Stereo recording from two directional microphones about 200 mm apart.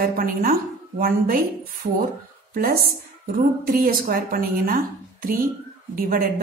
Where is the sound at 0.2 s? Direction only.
45° right (ahead or behind).